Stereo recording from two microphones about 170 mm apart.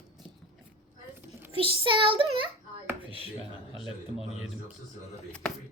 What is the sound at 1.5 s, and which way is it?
Child singing, 30° right (ahead or behind).